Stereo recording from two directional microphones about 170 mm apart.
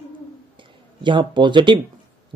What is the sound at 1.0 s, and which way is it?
Speech, 30° right (ahead or behind).